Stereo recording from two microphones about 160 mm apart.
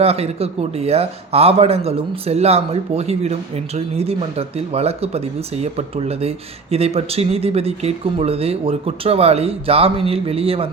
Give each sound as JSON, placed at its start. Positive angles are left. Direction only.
{"t": 0.0, "sound": "speech", "side_deg": -40}